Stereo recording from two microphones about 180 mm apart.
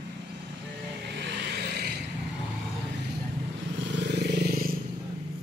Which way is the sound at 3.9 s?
75° right (ahead or behind).